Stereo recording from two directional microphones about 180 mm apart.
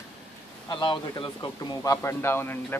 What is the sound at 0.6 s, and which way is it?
Speech, 25° left (ahead or behind).